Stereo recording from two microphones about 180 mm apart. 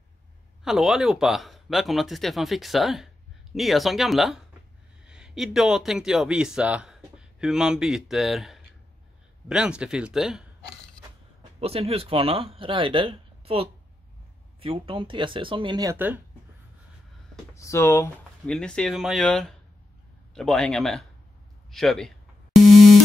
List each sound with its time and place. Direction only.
0.7 s speech: centre (ahead or behind)
11.6 s speech: 35° right (ahead or behind); by 16.2 s 15° right (ahead or behind)
17.6 s speech: 15° left (ahead or behind)
22.6 s busy signal: centre (ahead or behind)